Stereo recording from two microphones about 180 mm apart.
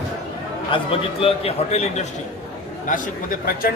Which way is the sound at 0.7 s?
30° left (ahead or behind).